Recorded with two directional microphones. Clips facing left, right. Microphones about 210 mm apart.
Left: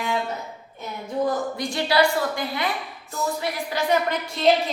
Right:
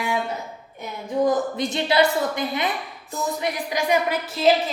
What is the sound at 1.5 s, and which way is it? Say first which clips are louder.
A woman's voice: right 1 dB; 20° right (ahead or behind).